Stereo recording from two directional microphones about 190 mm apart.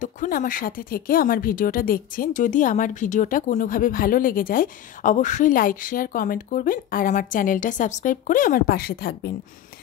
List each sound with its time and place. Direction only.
0.0 s speech: 45° left (ahead or behind)